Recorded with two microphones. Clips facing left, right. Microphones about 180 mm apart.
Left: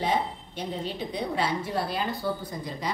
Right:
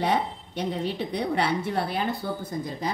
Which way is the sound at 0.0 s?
70° right (ahead or behind).